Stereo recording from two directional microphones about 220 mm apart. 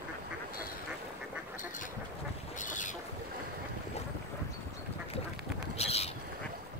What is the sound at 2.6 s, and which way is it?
Boat, 35° left (ahead or behind).